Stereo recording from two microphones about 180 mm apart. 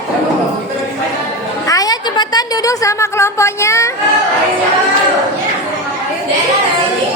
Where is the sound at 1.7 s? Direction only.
20° left (ahead or behind).